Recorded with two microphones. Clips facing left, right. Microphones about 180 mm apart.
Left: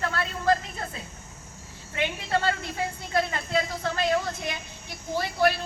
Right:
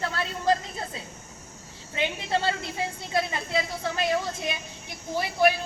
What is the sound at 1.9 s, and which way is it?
A woman's voice, 20° right (ahead or behind).